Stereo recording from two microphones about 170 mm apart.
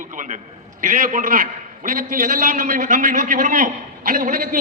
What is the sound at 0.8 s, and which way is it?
A man's voice, 50° right (ahead or behind).